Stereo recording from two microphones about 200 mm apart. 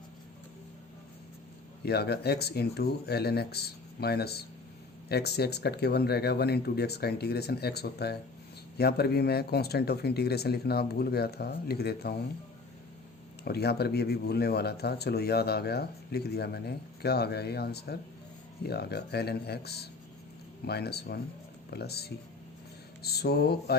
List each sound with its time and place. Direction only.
1.8 s speech: 55° left (ahead or behind)
13.4 s speech: 55° left (ahead or behind)